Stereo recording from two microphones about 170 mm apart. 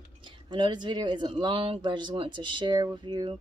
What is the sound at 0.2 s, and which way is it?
Speech, 30° right (ahead or behind).